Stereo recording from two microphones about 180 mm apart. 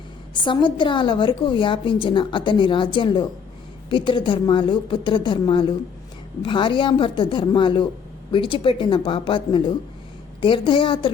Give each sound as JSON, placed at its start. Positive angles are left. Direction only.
{"t": 0.3, "sound": "a woman's voice", "side_deg": 25}